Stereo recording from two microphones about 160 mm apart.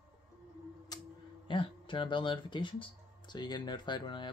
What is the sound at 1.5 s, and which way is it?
Speech, 30° left (ahead or behind).